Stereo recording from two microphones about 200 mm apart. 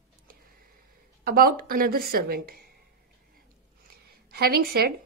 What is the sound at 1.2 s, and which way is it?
Speech, 45° right (ahead or behind).